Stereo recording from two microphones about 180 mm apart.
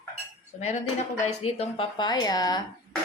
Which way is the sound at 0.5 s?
40° left (ahead or behind).